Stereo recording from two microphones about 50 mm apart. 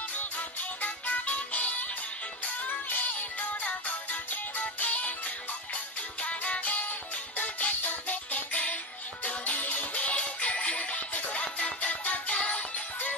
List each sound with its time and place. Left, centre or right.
0.2 s music: left